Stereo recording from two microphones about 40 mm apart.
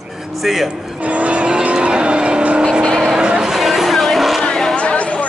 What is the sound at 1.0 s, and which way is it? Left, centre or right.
Vehicle, right.